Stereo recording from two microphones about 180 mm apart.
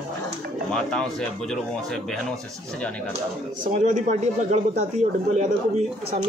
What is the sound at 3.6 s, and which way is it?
Speech, 45° right (ahead or behind).